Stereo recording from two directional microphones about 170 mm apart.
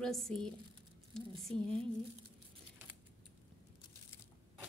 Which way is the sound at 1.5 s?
35° right (ahead or behind).